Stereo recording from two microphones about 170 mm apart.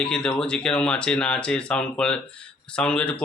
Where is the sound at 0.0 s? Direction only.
5° left (ahead or behind).